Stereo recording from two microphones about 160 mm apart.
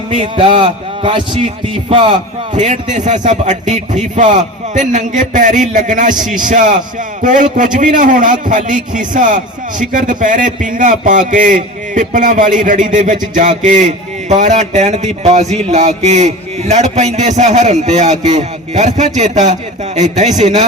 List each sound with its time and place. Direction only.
0.1 s a man's voice: 35° right (ahead or behind)
2.6 s a man's voice: 50° right (ahead or behind)